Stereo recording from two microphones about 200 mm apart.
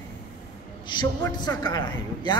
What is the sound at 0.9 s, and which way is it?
Speech, 20° left (ahead or behind).